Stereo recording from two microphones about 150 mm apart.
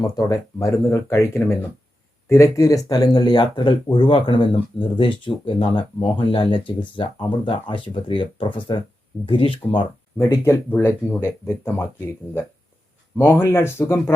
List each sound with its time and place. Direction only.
0.2 s speech: 20° left (ahead or behind)
10.2 s speech: 15° left (ahead or behind)